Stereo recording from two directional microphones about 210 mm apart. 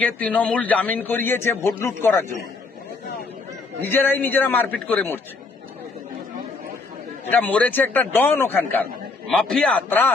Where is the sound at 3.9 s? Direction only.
10° left (ahead or behind).